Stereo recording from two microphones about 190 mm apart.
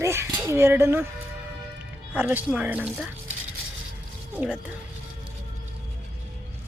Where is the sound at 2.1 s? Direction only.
5° right (ahead or behind).